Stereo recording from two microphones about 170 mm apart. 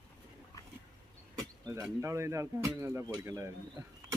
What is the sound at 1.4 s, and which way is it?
Insect, 20° right (ahead or behind).